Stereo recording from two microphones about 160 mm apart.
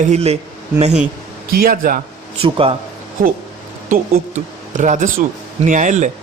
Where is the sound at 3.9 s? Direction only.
55° right (ahead or behind).